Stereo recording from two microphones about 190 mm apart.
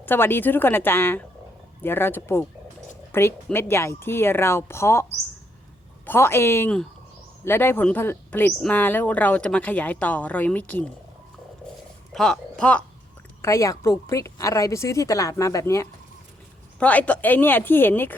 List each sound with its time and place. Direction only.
0.0 s speech: 10° left (ahead or behind)
6.1 s speech: 10° left (ahead or behind)
12.1 s speech: 5° left (ahead or behind)
13.4 s speech: 15° left (ahead or behind)